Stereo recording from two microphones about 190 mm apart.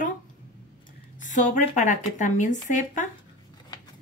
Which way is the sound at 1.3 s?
40° left (ahead or behind).